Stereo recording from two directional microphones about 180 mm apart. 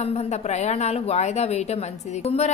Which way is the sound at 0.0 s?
35° left (ahead or behind).